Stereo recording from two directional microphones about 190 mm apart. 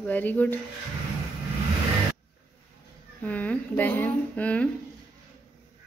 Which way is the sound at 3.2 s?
10° left (ahead or behind).